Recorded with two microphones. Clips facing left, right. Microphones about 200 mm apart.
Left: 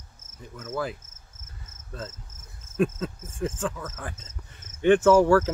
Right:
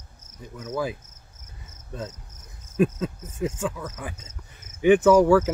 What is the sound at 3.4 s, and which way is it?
Speech, 5° right (ahead or behind).